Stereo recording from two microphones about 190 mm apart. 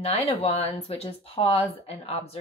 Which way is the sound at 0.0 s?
35° left (ahead or behind).